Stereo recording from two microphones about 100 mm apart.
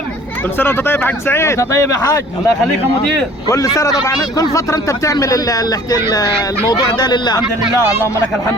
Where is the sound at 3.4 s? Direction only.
35° left (ahead or behind).